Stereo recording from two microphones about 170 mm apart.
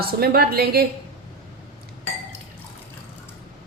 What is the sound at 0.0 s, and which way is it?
Speech, 65° right (ahead or behind).